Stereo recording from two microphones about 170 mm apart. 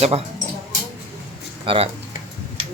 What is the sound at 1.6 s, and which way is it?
Speech, 35° right (ahead or behind).